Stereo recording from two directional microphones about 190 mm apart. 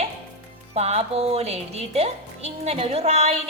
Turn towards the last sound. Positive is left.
turn(degrees=-35)  # may be behind; listen again after turning